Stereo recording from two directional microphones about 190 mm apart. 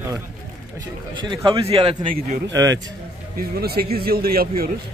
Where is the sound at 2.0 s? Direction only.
45° right (ahead or behind).